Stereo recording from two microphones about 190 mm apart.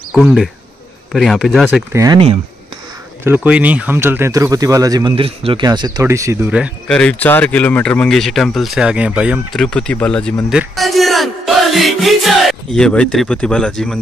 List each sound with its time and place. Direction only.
0.1 s speech: centre (ahead or behind)
3.3 s speech: 5° right (ahead or behind)
7.0 s speech: 5° left (ahead or behind)